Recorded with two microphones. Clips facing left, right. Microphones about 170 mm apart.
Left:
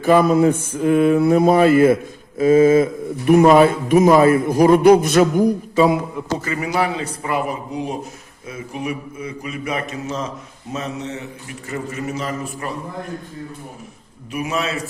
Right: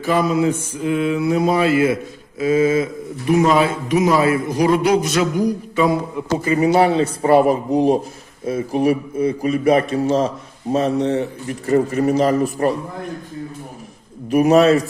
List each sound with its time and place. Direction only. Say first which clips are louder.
0.0 s speech: left 4 dB; 50° left (ahead or behind)
6.6 s a man's voice: right 9 dB; 30° right (ahead or behind)
14.3 s a man's voice: right 12 dB; 40° right (ahead or behind)